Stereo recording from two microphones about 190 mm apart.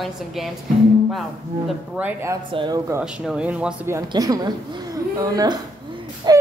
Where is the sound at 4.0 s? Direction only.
20° right (ahead or behind).